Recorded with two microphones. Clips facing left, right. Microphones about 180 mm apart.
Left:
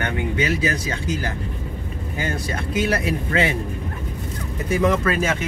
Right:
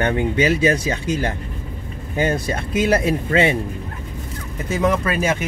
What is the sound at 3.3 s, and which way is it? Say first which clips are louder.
Speech: right 4 dB; 25° right (ahead or behind).